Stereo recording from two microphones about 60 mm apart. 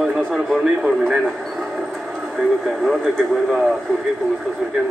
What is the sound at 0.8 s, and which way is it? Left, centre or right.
Speech, centre.